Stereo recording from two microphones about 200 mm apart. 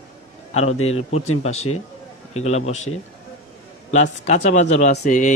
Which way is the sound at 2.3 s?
35° left (ahead or behind).